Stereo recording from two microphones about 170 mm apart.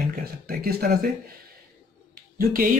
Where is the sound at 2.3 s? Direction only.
55° right (ahead or behind).